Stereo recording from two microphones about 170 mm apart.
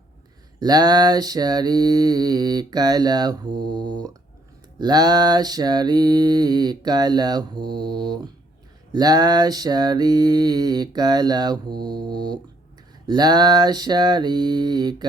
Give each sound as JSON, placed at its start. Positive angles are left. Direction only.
{"t": 0.6, "sound": "mantra", "side_deg": -25}